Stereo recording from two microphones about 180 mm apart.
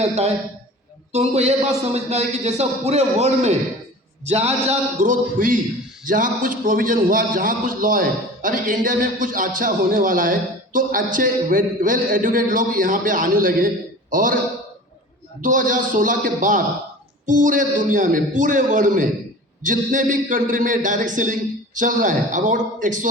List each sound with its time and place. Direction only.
0.0 s a man's voice: 35° right (ahead or behind)
15.4 s a man's voice: 45° right (ahead or behind)